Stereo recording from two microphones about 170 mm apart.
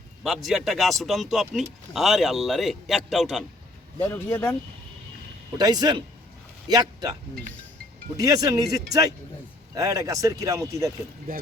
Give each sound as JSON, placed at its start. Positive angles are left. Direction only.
{"t": 0.2, "sound": "speech", "side_deg": 0}
{"t": 4.0, "sound": "speech", "side_deg": 15}
{"t": 5.5, "sound": "speech", "side_deg": -25}